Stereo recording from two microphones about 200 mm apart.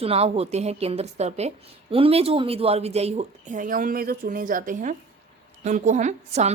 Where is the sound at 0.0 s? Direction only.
30° right (ahead or behind).